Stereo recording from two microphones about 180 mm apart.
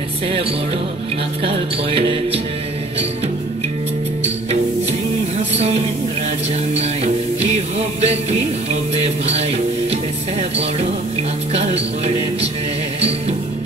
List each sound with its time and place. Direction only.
1.4 s music: 30° right (ahead or behind)
6.7 s music: 35° right (ahead or behind)
11.5 s music: 35° right (ahead or behind)